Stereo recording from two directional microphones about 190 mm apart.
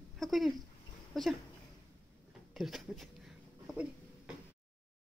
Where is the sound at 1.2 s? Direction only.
Centre (ahead or behind).